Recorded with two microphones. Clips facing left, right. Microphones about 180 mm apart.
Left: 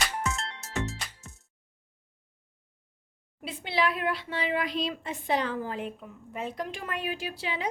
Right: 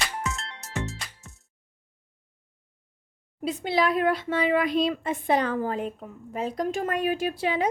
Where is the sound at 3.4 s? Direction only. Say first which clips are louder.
Right 5 dB; 40° right (ahead or behind).